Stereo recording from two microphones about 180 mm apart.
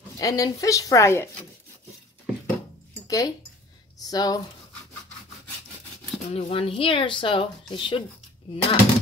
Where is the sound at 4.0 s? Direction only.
20° left (ahead or behind).